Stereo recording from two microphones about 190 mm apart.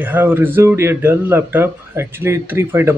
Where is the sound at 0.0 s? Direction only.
10° right (ahead or behind).